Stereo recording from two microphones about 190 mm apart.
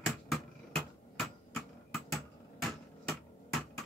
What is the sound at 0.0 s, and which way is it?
Hammer, centre (ahead or behind).